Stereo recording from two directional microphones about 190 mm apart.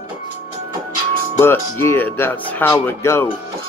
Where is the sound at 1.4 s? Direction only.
15° left (ahead or behind).